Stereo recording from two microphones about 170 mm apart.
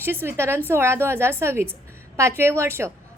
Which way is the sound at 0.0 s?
15° right (ahead or behind).